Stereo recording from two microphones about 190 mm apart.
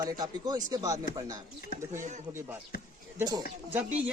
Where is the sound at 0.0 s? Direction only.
20° right (ahead or behind).